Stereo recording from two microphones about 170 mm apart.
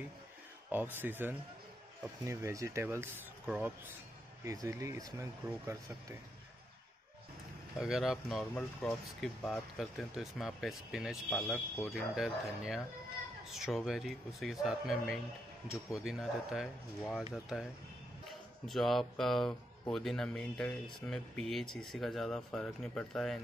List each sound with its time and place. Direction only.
0.7 s speech: 10° right (ahead or behind)
4.5 s speech: 20° right (ahead or behind)
7.8 s speech: centre (ahead or behind)